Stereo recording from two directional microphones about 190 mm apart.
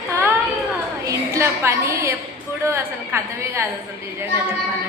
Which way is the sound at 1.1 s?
15° right (ahead or behind).